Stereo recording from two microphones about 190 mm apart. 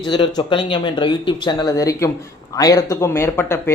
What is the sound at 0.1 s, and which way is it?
Speech, 25° left (ahead or behind).